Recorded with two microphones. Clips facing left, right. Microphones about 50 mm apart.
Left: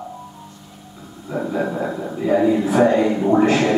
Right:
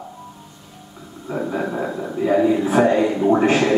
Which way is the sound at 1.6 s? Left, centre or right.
Centre.